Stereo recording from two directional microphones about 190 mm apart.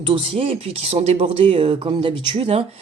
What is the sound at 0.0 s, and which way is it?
Speech, 30° right (ahead or behind).